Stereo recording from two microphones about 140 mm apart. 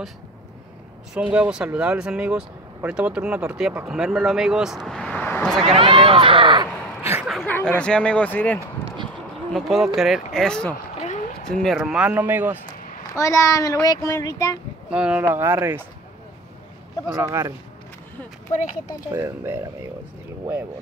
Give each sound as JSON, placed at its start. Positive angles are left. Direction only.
{"t": 1.1, "sound": "speech", "side_deg": -5}
{"t": 5.8, "sound": "a sound", "side_deg": -40}
{"t": 7.0, "sound": "a sound", "side_deg": -15}
{"t": 7.2, "sound": "a sound", "side_deg": 0}
{"t": 7.5, "sound": "speech", "side_deg": 10}
{"t": 9.5, "sound": "speech", "side_deg": 0}
{"t": 11.0, "sound": "a sound", "side_deg": 55}
{"t": 11.4, "sound": "speech", "side_deg": 5}
{"t": 13.1, "sound": "speech", "side_deg": 20}
{"t": 14.9, "sound": "speech", "side_deg": -10}
{"t": 17.1, "sound": "speech", "side_deg": -20}
{"t": 19.1, "sound": "speech", "side_deg": -20}